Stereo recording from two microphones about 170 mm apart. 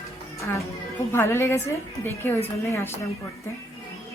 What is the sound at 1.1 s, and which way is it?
Speech, 15° left (ahead or behind).